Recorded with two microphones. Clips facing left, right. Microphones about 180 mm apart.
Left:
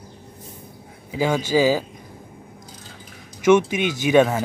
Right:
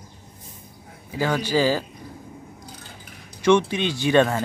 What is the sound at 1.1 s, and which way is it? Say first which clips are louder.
Speech: left 3 dB; 15° left (ahead or behind).